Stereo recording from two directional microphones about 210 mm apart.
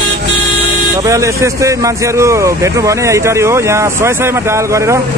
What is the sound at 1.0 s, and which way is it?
Speech, 15° right (ahead or behind).